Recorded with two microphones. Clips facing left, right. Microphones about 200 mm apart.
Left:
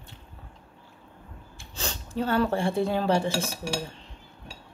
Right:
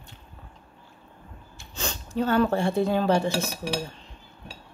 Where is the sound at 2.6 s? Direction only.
30° left (ahead or behind).